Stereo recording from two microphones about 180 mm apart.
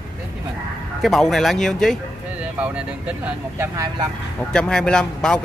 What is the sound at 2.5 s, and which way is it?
Speech, 10° right (ahead or behind).